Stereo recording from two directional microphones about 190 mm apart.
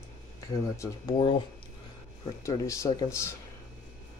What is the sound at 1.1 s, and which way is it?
Speech, 25° left (ahead or behind).